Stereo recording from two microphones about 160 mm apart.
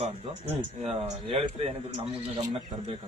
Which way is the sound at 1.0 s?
40° right (ahead or behind).